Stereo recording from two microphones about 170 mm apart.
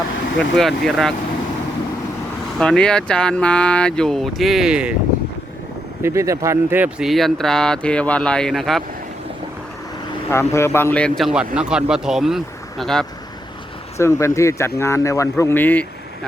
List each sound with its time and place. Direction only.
0.5 s speech: centre (ahead or behind)
2.6 s speech: 5° left (ahead or behind)
6.0 s speech: 15° right (ahead or behind); by 8.8 s centre (ahead or behind)
10.2 s speech: 15° left (ahead or behind)
11.2 s speech: 5° right (ahead or behind)
14.0 s speech: 15° left (ahead or behind)